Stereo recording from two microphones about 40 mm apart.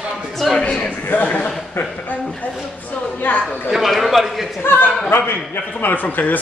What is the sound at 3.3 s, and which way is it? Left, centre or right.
Speech, left.